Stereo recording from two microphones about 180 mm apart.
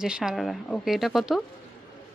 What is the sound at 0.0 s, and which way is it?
Speech, 5° right (ahead or behind).